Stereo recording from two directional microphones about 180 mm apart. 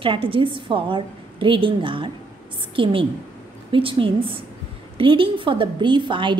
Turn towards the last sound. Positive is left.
turn(degrees=-25)  # may be behind; listen again after turning